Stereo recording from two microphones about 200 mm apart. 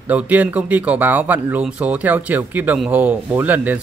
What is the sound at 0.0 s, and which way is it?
Speech, 10° right (ahead or behind).